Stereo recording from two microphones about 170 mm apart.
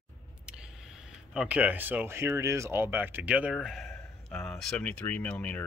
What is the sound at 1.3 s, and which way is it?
Speech, 5° right (ahead or behind).